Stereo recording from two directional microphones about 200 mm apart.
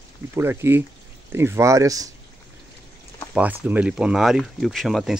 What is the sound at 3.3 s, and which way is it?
Speech, 10° right (ahead or behind).